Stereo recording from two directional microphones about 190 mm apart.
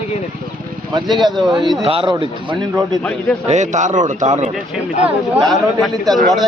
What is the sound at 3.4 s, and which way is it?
A man's voice, 40° right (ahead or behind).